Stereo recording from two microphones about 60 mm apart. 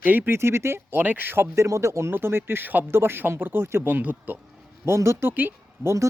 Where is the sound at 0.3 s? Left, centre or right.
Right.